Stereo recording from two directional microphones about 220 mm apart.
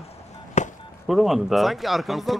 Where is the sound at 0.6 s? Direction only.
30° left (ahead or behind).